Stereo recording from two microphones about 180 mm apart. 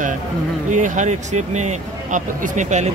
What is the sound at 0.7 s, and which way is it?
Speech, 45° right (ahead or behind).